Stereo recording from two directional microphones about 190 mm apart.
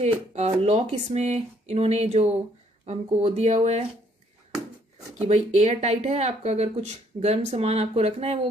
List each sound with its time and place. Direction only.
0.0 s speech: 35° right (ahead or behind)
5.3 s speech: 35° right (ahead or behind)